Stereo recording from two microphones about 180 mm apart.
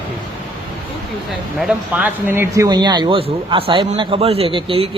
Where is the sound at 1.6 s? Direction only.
5° right (ahead or behind).